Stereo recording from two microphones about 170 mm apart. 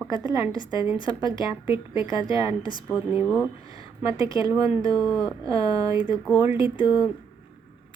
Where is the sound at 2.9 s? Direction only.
10° right (ahead or behind).